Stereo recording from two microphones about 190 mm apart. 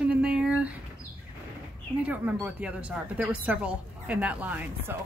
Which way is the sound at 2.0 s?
10° right (ahead or behind).